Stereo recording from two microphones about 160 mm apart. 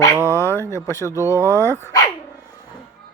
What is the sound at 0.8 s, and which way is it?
Speech, 20° left (ahead or behind).